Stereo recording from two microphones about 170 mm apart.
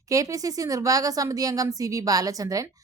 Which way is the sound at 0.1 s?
20° right (ahead or behind).